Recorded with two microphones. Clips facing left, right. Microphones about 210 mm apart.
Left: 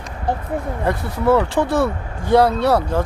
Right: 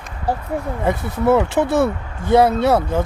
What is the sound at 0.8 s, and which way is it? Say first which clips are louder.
Speech: right 1 dB; 20° right (ahead or behind).